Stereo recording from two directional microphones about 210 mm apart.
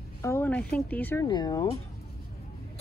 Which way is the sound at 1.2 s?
20° left (ahead or behind).